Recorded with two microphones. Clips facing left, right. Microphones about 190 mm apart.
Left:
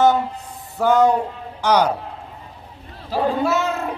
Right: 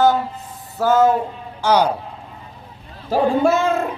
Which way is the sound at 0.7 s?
5° right (ahead or behind).